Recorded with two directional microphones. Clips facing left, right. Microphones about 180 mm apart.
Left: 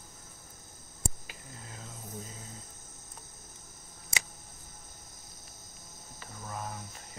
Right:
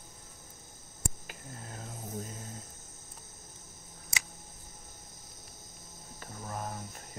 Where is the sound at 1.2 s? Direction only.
50° right (ahead or behind).